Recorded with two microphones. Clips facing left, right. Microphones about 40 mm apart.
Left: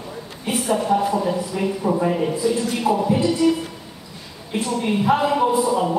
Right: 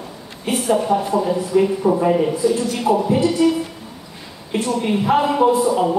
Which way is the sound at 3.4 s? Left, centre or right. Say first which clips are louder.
Even; centre.